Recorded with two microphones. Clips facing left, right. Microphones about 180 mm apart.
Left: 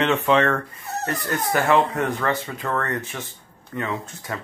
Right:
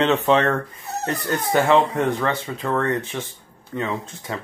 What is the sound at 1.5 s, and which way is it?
Speech, 25° right (ahead or behind).